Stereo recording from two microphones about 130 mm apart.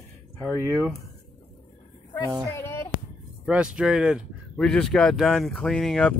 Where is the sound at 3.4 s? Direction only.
10° right (ahead or behind).